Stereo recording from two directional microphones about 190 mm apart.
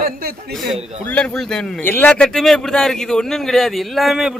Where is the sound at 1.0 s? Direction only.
5° left (ahead or behind).